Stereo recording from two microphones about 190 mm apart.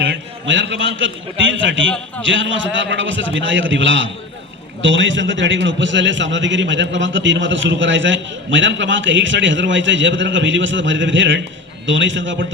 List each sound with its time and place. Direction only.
0.0 s a man's voice: 75° right (ahead or behind)